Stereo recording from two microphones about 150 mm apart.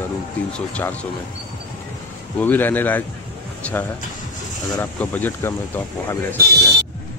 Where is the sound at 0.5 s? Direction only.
10° left (ahead or behind).